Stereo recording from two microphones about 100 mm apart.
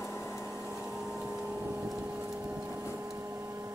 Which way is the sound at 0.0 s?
30° left (ahead or behind).